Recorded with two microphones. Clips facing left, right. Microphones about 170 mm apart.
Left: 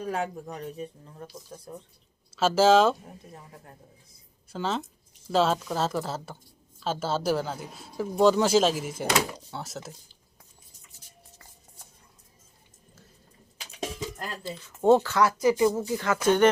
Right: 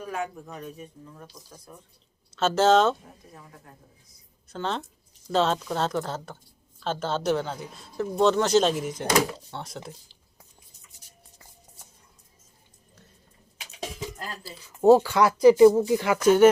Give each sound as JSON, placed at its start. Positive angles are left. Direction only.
{"t": 0.0, "sound": "speech", "side_deg": 35}
{"t": 2.3, "sound": "speech", "side_deg": 5}
{"t": 4.5, "sound": "speech", "side_deg": 5}
{"t": 14.4, "sound": "speech", "side_deg": -10}
{"t": 15.2, "sound": "speech", "side_deg": -25}
{"t": 16.2, "sound": "speech", "side_deg": -5}